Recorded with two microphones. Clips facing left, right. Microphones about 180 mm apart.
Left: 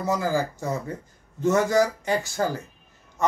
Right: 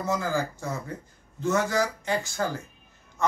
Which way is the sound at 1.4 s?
45° left (ahead or behind).